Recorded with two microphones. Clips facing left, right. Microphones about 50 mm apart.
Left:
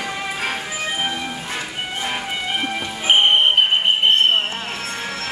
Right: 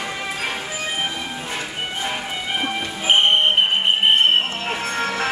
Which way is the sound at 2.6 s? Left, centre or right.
Centre.